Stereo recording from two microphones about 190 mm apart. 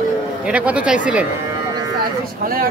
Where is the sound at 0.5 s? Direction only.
5° right (ahead or behind).